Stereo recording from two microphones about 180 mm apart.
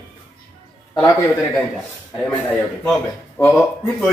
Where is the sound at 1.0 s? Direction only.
10° left (ahead or behind).